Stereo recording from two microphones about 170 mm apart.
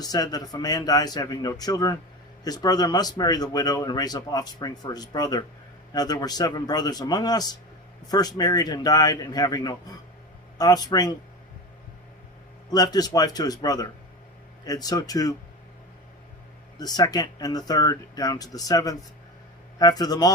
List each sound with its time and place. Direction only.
0.0 s speech: 20° left (ahead or behind)
12.7 s speech: 20° left (ahead or behind)
16.7 s speech: 20° left (ahead or behind)